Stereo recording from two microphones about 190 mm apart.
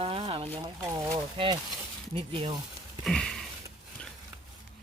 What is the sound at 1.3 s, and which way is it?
Speech, 25° right (ahead or behind).